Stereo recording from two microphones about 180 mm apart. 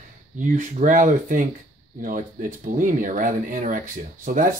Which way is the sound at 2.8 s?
45° right (ahead or behind).